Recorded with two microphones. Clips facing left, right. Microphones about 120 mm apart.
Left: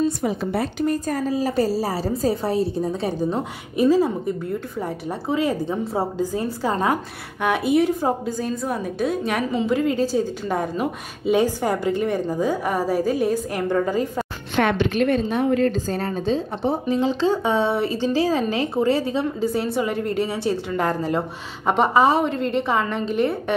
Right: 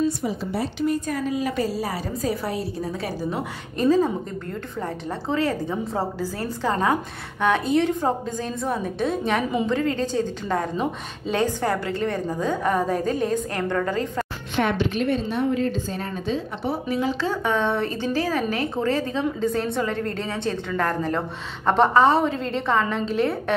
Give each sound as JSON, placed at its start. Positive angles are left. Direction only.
{"t": 0.2, "sound": "speech", "side_deg": 60}
{"t": 0.7, "sound": "a woman's voice", "side_deg": 45}
{"t": 3.7, "sound": "a woman's voice", "side_deg": 10}
{"t": 14.5, "sound": "a woman's voice", "side_deg": 65}
{"t": 16.9, "sound": "a woman's voice", "side_deg": 20}